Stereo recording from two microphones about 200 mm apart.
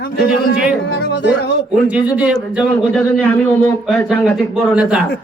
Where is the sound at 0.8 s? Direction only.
55° left (ahead or behind).